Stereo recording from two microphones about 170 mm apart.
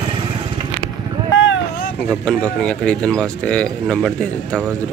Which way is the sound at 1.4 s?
90° left.